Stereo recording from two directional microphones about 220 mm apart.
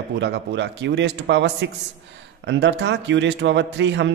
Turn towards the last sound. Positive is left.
turn(degrees=-55)  # may be behind; listen again after turning